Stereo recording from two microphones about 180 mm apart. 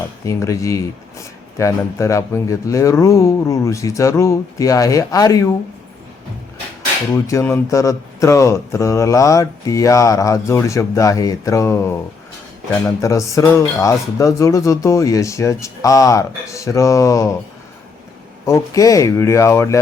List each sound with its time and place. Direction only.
0.3 s speech: 15° left (ahead or behind)
7.1 s speech: 15° left (ahead or behind)
18.4 s speech: 15° left (ahead or behind)